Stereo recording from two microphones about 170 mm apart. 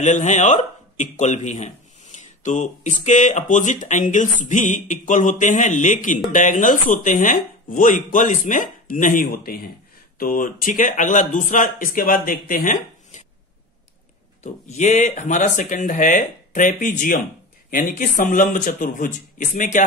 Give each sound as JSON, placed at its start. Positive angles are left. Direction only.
{"t": 0.0, "sound": "speech", "side_deg": 45}
{"t": 14.4, "sound": "speech", "side_deg": 40}